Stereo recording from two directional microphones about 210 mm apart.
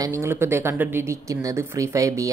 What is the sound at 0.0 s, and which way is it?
Speech, 15° right (ahead or behind).